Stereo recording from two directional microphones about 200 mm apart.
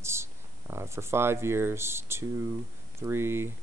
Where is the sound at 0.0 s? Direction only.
15° right (ahead or behind).